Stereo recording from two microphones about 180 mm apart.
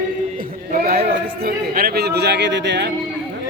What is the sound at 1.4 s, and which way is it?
Music, 55° right (ahead or behind).